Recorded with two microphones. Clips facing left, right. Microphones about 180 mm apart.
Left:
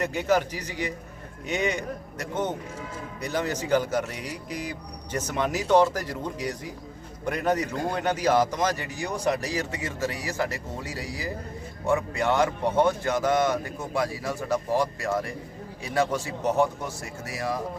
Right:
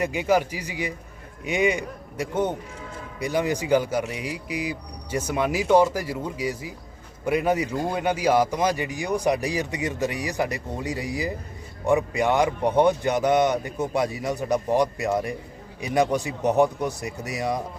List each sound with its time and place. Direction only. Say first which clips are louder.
0.0 s speech: right 2 dB; 10° right (ahead or behind)